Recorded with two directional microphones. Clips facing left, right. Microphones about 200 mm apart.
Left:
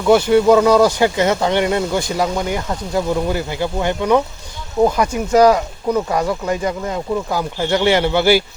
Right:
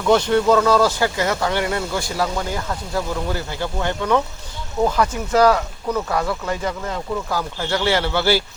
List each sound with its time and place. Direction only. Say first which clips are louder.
0.0 s speech: left 4 dB; 10° left (ahead or behind)